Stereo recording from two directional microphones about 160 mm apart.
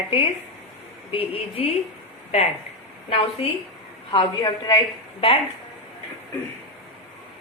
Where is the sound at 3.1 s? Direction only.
35° left (ahead or behind).